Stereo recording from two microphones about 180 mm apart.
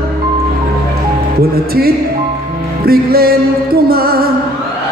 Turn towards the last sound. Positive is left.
turn(degrees=-55)  # may be behind; listen again after turning